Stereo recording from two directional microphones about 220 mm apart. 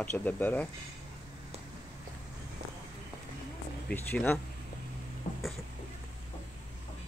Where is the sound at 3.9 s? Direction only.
10° left (ahead or behind).